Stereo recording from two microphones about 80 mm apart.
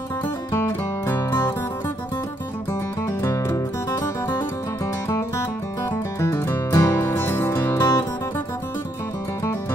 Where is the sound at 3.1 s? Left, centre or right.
Left.